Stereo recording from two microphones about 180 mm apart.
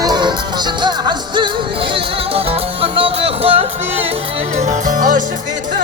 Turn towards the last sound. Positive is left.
turn(degrees=-50)  # may be behind; listen again after turning